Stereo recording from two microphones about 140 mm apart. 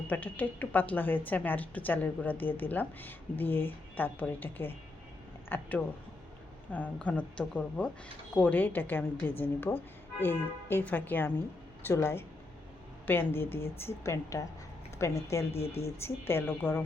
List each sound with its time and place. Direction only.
0.1 s a woman's voice: 10° left (ahead or behind)